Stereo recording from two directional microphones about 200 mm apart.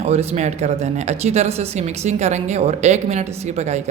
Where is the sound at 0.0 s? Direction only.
30° right (ahead or behind).